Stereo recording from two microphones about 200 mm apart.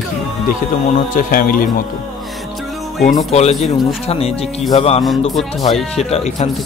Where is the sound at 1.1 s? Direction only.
45° left (ahead or behind).